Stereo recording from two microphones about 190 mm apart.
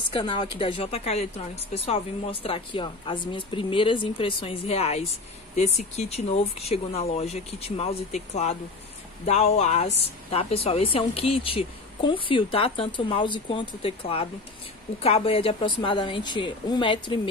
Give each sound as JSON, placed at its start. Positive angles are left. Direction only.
{"t": 0.1, "sound": "a woman's voice", "side_deg": 25}